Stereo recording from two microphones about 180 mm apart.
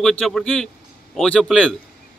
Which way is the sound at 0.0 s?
5° left (ahead or behind).